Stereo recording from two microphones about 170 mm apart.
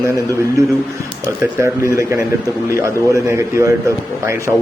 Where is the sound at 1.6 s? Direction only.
15° right (ahead or behind).